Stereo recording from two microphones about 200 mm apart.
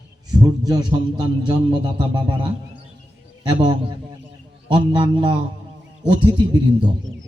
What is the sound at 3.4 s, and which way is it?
A man's voice, 20° right (ahead or behind).